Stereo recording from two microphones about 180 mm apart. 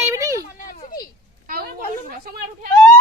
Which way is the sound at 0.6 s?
50° left (ahead or behind).